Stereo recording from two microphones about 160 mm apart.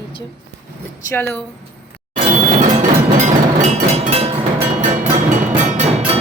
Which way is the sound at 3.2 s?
45° right (ahead or behind).